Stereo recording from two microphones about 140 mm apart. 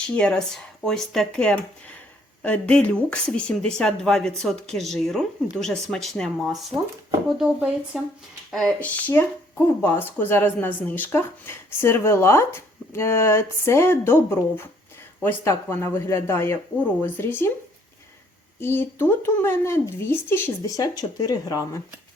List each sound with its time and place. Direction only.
0.2 s speech: 5° left (ahead or behind)
18.6 s speech: 15° left (ahead or behind)